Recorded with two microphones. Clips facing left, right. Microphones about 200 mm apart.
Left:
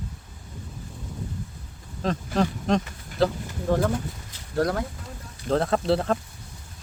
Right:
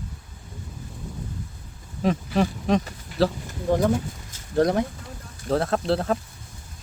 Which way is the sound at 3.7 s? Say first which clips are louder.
Right 2 dB; 15° right (ahead or behind).